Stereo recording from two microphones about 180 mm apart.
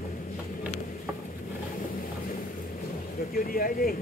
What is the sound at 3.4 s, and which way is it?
Speech, 50° left (ahead or behind).